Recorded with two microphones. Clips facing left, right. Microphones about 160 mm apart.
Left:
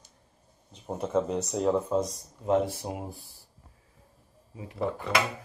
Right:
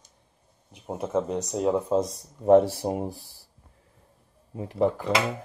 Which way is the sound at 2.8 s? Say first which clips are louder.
Right 8 dB; 40° right (ahead or behind).